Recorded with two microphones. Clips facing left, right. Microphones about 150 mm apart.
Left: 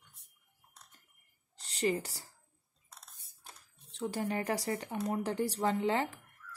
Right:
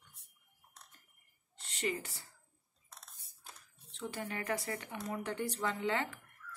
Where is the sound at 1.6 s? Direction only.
35° left (ahead or behind).